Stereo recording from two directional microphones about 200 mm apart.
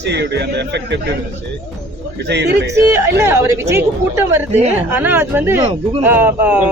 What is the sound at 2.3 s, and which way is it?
Speech, 60° right (ahead or behind).